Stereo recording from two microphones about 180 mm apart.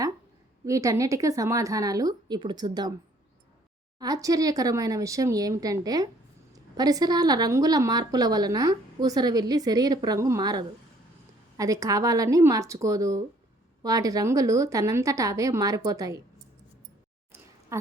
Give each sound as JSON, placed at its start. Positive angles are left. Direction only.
{"t": 0.6, "sound": "a woman's voice", "side_deg": -15}
{"t": 3.9, "sound": "a woman's voice", "side_deg": -20}
{"t": 17.7, "sound": "speech", "side_deg": -15}